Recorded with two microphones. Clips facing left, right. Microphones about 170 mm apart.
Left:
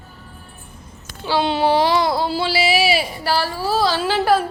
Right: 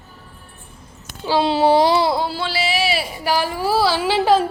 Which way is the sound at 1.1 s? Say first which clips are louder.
Right 1 dB; 35° right (ahead or behind).